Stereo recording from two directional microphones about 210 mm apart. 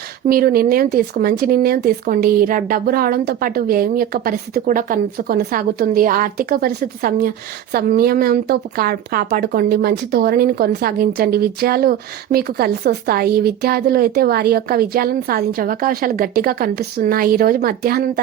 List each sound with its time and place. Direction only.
0.3 s speech: 45° right (ahead or behind)